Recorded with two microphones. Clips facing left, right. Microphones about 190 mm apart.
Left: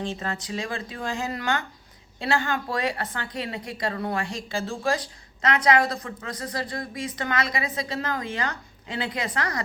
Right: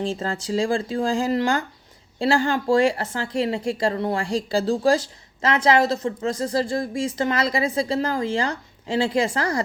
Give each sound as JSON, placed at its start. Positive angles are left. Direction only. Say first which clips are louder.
{"t": 0.0, "sound": "speech", "louder": "right 5 dB", "side_deg": -30}